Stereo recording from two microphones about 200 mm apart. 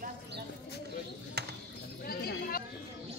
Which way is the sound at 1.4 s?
55° right (ahead or behind).